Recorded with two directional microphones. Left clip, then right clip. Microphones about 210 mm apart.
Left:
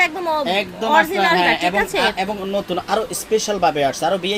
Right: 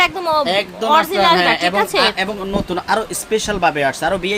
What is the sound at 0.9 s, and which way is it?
Speech, 15° right (ahead or behind).